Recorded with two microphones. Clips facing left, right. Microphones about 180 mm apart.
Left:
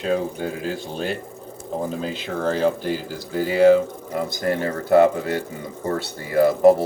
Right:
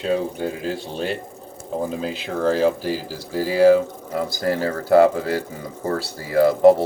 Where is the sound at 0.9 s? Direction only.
Centre (ahead or behind).